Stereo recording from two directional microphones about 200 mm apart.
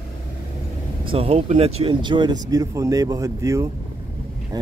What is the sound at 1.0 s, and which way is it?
Speech, 30° right (ahead or behind).